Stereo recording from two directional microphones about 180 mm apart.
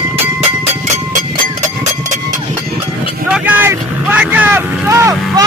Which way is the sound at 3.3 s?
10° right (ahead or behind).